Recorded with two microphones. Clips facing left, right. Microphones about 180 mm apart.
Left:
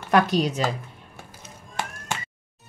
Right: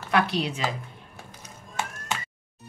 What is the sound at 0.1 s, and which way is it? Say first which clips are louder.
Speech: left 4 dB; 45° left (ahead or behind).